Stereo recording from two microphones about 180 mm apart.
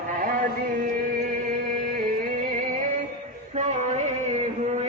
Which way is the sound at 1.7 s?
50° right (ahead or behind).